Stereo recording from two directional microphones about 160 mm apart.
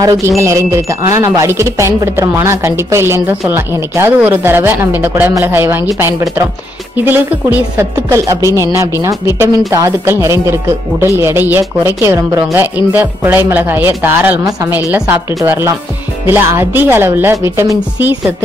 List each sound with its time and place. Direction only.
0.4 s speech: 20° right (ahead or behind)